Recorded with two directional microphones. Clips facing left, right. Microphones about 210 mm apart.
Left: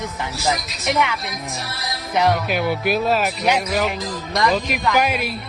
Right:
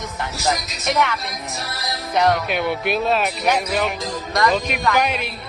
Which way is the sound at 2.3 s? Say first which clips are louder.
Left 1 dB; 5° left (ahead or behind).